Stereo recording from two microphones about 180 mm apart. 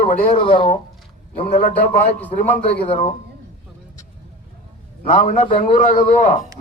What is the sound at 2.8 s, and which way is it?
Speech, 30° left (ahead or behind).